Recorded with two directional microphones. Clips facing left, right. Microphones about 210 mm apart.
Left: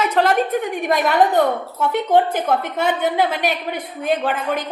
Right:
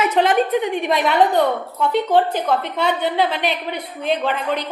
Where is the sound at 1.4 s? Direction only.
10° left (ahead or behind).